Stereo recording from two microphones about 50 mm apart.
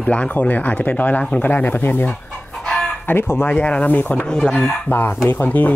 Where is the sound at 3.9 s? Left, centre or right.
Left.